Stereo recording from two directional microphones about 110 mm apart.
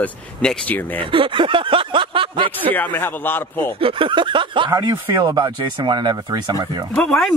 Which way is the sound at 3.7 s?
55° right (ahead or behind).